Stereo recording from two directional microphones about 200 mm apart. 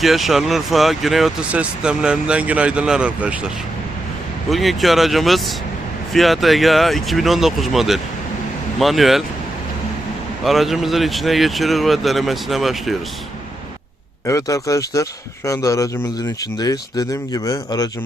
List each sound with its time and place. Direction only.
0.0 s speech: centre (ahead or behind)
4.4 s speech: centre (ahead or behind)
10.4 s speech: centre (ahead or behind)
14.3 s speech: 15° left (ahead or behind)